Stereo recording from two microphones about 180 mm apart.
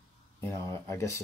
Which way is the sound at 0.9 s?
15° left (ahead or behind).